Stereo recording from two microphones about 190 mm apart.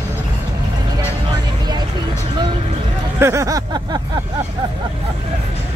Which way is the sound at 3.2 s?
15° right (ahead or behind).